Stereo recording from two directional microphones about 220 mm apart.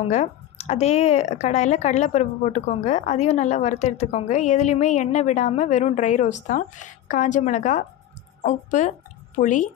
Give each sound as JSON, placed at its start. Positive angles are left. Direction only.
{"t": 0.0, "sound": "a woman's voice", "side_deg": 30}